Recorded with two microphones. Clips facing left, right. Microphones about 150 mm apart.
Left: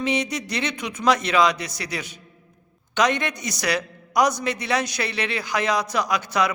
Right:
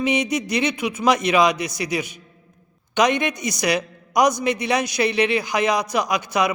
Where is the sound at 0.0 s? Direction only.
15° right (ahead or behind).